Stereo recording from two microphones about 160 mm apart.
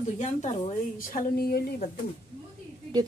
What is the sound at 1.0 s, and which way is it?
Speech, 60° left (ahead or behind).